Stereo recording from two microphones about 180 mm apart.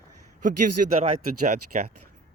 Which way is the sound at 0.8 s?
55° right (ahead or behind).